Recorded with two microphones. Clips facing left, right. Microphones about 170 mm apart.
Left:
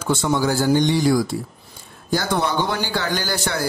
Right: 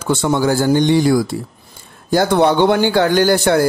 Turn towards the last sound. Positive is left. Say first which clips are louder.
# right 11 dB
turn(degrees=-55)  # may be behind; listen again after turning